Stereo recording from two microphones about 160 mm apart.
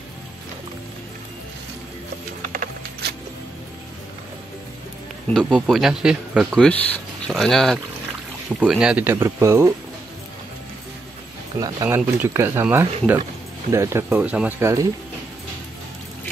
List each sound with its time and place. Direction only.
2.5 s a sound: 75° right (ahead or behind)
5.3 s speech: centre (ahead or behind); by 9.7 s 15° right (ahead or behind)
11.6 s speech: 15° right (ahead or behind)